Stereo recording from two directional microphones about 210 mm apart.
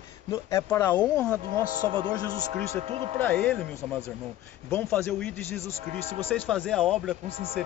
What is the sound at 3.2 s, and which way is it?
Speech, 10° left (ahead or behind).